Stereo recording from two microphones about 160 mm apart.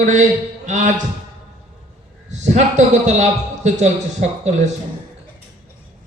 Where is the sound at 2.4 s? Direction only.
45° right (ahead or behind).